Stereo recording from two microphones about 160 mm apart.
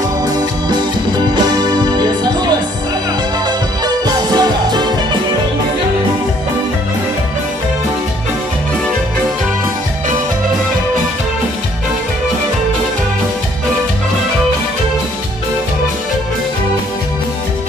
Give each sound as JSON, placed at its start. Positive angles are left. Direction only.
{"t": 0.2, "sound": "music", "side_deg": -25}
{"t": 3.4, "sound": "music", "side_deg": -25}